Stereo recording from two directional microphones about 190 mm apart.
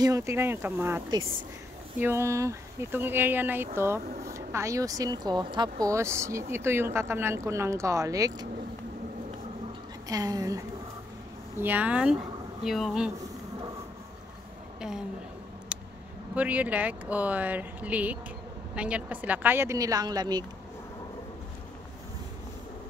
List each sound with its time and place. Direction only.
0.0 s speech: 15° right (ahead or behind)
10.0 s a woman's voice: 20° right (ahead or behind); by 13.1 s centre (ahead or behind)
14.8 s a sound: 5° right (ahead or behind)
16.3 s speech: 10° right (ahead or behind)